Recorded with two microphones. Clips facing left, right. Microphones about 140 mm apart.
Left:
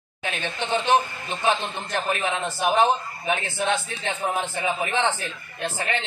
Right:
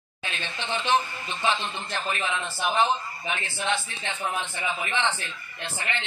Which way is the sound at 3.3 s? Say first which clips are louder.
Left 5 dB; 45° left (ahead or behind).